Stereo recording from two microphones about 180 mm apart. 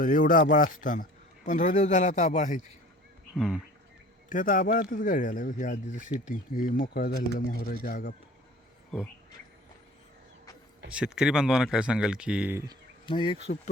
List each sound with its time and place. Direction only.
0.0 s speech: 50° left (ahead or behind)
3.3 s speech: 5° right (ahead or behind)
4.3 s speech: 50° left (ahead or behind)
10.9 s speech: 5° right (ahead or behind)
13.1 s speech: 25° left (ahead or behind)